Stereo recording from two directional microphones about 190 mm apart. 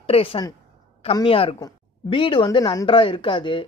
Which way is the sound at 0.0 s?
30° left (ahead or behind).